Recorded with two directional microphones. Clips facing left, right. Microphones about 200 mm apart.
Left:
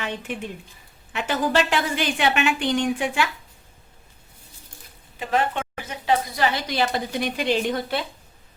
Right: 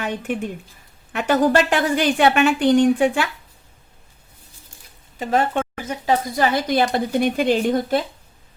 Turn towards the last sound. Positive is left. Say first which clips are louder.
# right 5 dB
turn(degrees=-45)  # may be behind; listen again after turning